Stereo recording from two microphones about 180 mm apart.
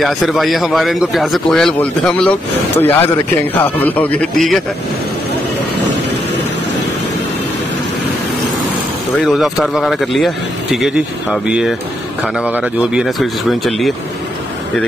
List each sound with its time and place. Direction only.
0.0 s a man's voice: centre (ahead or behind)
9.2 s a man's voice: centre (ahead or behind)